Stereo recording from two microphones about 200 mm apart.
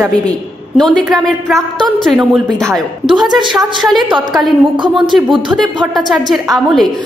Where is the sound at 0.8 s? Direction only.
Centre (ahead or behind).